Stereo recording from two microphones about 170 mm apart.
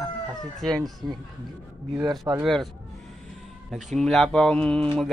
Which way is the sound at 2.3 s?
15° right (ahead or behind).